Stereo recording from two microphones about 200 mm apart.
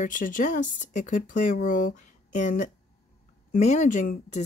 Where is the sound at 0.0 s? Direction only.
40° left (ahead or behind).